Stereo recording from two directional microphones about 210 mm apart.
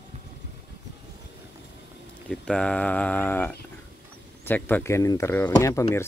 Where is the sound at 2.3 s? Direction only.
5° left (ahead or behind).